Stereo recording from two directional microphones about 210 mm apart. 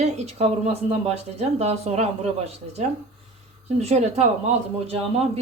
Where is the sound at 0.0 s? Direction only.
30° right (ahead or behind).